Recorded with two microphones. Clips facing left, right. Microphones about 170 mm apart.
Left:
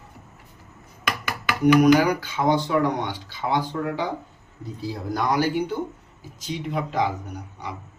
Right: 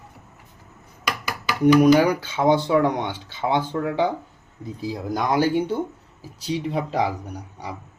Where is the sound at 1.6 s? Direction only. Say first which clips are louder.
Right 1 dB; 30° right (ahead or behind).